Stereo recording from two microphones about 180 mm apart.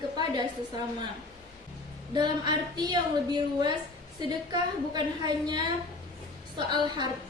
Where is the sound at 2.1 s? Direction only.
25° right (ahead or behind).